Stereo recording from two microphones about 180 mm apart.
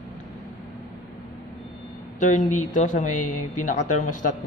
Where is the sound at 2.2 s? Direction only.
45° left (ahead or behind).